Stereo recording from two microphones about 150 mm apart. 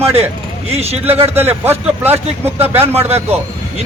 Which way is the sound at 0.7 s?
45° right (ahead or behind).